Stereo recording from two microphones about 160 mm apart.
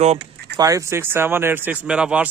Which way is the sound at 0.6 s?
20° right (ahead or behind).